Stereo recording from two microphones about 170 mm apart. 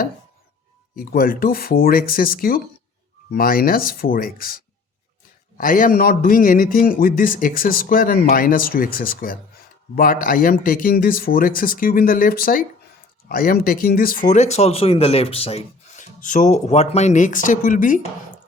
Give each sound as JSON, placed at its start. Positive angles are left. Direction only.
{"t": 0.9, "sound": "a man's voice", "side_deg": 55}